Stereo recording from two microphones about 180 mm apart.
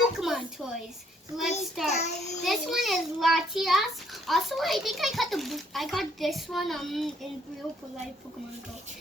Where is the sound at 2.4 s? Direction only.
Centre (ahead or behind).